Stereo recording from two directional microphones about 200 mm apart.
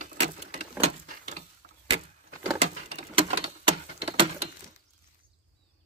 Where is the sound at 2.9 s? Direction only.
25° right (ahead or behind).